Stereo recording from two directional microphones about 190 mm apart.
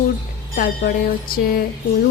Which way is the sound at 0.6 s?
50° left (ahead or behind).